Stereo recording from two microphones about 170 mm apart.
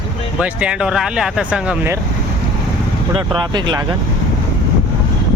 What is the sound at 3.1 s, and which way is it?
Speech, 30° right (ahead or behind).